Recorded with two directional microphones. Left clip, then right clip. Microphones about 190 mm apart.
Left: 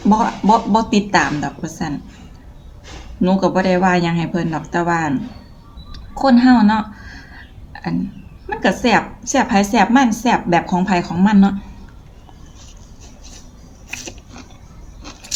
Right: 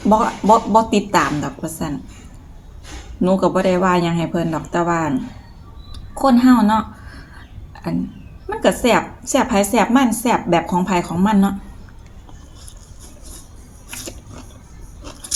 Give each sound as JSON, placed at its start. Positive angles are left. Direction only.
{"t": 0.1, "sound": "a woman's voice", "side_deg": 15}
{"t": 3.2, "sound": "a woman's voice", "side_deg": 15}
{"t": 8.4, "sound": "a woman's voice", "side_deg": 15}